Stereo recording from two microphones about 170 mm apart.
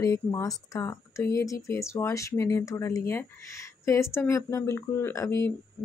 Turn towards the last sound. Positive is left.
turn(degrees=15)  # may be behind; listen again after turning